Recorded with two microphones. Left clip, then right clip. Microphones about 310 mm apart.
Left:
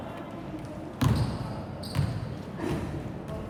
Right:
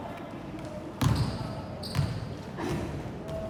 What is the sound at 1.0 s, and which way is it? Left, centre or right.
Basketball bounce, centre.